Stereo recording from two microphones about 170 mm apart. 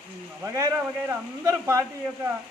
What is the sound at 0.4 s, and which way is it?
A man's voice, 20° right (ahead or behind).